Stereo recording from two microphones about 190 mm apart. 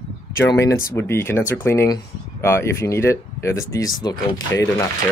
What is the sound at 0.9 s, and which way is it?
Speech, 15° left (ahead or behind).